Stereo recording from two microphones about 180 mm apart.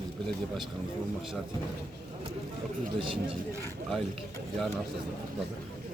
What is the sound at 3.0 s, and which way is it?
Speech, 30° right (ahead or behind).